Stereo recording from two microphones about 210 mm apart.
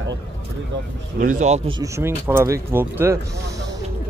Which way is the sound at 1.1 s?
40° right (ahead or behind).